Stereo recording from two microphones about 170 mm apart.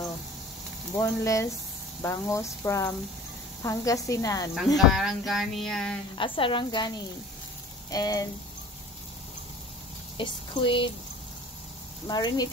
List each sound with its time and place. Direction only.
0.9 s speech: 15° left (ahead or behind)
4.7 s a sound: centre (ahead or behind)
6.1 s speech: 30° left (ahead or behind)
7.9 s speech: 20° left (ahead or behind)
10.1 s speech: 30° left (ahead or behind)
12.1 s speech: 25° left (ahead or behind)